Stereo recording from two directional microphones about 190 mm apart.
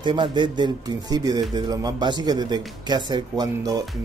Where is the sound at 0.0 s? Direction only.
25° right (ahead or behind).